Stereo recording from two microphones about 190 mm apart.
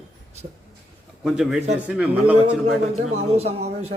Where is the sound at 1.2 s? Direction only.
5° right (ahead or behind).